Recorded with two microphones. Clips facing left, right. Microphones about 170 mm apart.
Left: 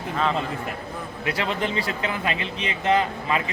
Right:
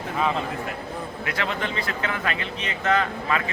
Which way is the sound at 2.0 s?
20° left (ahead or behind).